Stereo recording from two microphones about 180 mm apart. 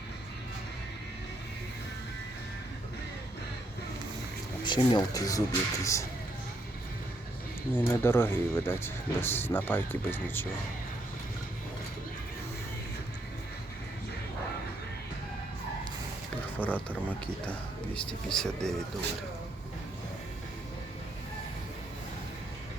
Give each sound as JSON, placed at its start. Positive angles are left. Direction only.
{"t": 4.6, "sound": "speech", "side_deg": 25}
{"t": 7.8, "sound": "speech", "side_deg": 10}
{"t": 16.6, "sound": "speech", "side_deg": 10}